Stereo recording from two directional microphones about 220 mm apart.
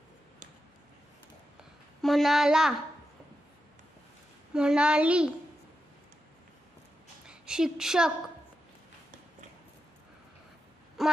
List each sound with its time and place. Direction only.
2.0 s speech: centre (ahead or behind)
4.6 s a child's voice: 5° right (ahead or behind)
7.2 s a woman's voice: 5° right (ahead or behind)
11.0 s a sound: centre (ahead or behind)